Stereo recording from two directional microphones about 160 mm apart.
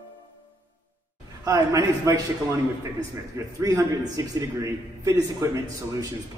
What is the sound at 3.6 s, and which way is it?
A man's voice, 20° right (ahead or behind).